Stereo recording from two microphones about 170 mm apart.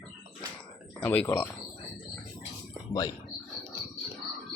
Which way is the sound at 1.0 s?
10° left (ahead or behind).